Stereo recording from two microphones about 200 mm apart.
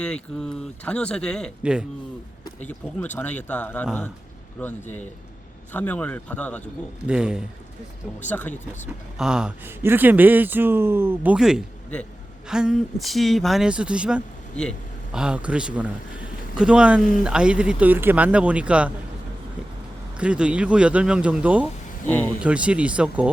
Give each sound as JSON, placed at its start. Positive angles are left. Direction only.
{"t": 0.0, "sound": "speech", "side_deg": 5}
{"t": 7.1, "sound": "speech", "side_deg": -5}
{"t": 8.3, "sound": "speech", "side_deg": 10}
{"t": 9.1, "sound": "speech", "side_deg": -5}
{"t": 20.1, "sound": "speech", "side_deg": -5}
{"t": 22.0, "sound": "speech", "side_deg": 10}
{"t": 22.4, "sound": "speech", "side_deg": -5}